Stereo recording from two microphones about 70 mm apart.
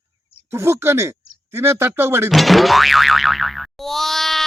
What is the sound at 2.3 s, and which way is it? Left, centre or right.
Boing, centre.